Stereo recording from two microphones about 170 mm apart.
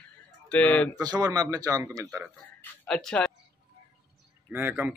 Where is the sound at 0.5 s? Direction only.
10° left (ahead or behind).